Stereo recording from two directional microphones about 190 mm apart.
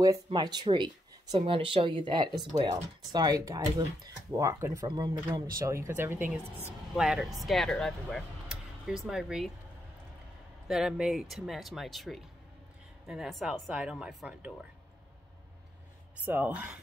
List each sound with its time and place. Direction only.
0.0 s speech: 20° right (ahead or behind); by 9.5 s centre (ahead or behind)
10.7 s speech: 5° right (ahead or behind)
16.3 s speech: 10° right (ahead or behind)